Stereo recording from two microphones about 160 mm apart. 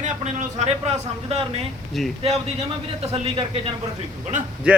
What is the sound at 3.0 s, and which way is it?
Speech, 40° right (ahead or behind).